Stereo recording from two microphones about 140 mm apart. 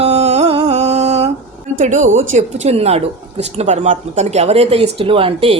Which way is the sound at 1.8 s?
60° right (ahead or behind).